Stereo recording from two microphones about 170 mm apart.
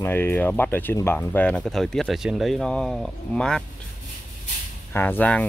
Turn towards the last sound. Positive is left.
turn(degrees=10)  # may be behind; listen again after turning